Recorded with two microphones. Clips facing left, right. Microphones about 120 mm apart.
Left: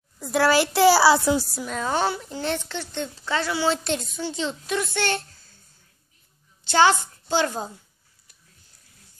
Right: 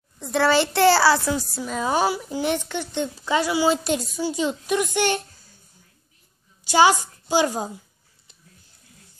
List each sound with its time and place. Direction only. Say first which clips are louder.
0.2 s a woman's voice: even; 5° left (ahead or behind)
1.5 s a woman's voice: right 2 dB; centre (ahead or behind)
6.6 s a woman's voice: right 1 dB; 10° right (ahead or behind)